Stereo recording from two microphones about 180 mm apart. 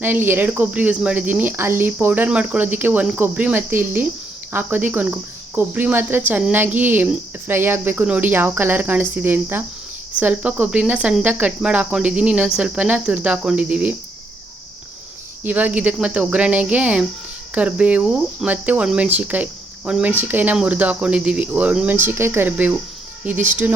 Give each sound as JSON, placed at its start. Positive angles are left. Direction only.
{"t": 0.0, "sound": "speech", "side_deg": -10}
{"t": 15.4, "sound": "speech", "side_deg": -10}